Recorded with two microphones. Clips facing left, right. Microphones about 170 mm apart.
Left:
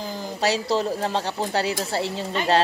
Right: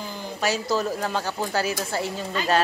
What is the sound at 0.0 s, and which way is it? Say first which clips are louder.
Speech: left 3 dB; 40° left (ahead or behind).